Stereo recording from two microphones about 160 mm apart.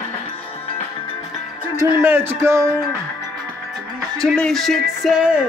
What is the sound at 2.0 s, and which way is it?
Music, 15° right (ahead or behind).